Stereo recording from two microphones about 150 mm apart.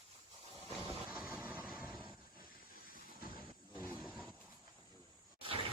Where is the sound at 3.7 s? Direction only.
15° right (ahead or behind).